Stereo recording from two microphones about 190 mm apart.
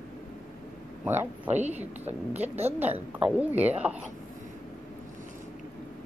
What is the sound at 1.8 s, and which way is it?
A woman's voice, 10° right (ahead or behind).